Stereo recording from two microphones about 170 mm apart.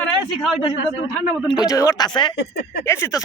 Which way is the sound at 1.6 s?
20° left (ahead or behind).